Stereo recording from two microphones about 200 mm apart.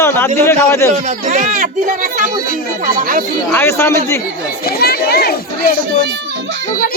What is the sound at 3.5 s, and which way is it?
Speech, 10° left (ahead or behind).